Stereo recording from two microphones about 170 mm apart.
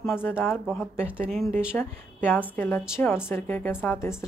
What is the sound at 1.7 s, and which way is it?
A woman's voice, 10° left (ahead or behind).